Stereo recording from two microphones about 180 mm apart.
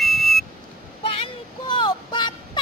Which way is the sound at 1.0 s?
30° left (ahead or behind).